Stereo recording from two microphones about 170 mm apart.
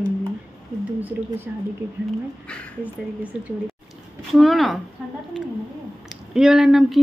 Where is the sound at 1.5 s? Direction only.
5° right (ahead or behind).